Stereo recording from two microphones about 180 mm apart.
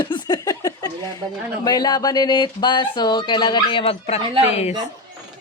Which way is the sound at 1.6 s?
20° left (ahead or behind).